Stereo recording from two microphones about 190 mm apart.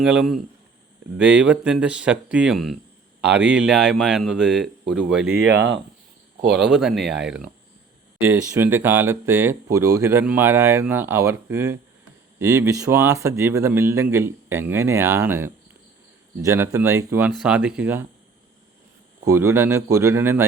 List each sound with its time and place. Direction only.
0.0 s a man's voice: 5° right (ahead or behind)
5.5 s speech: 75° right (ahead or behind)
6.5 s a man's voice: 5° right (ahead or behind)
19.2 s speech: 15° right (ahead or behind)